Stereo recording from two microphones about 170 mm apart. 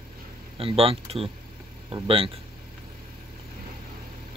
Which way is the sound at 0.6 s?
35° right (ahead or behind).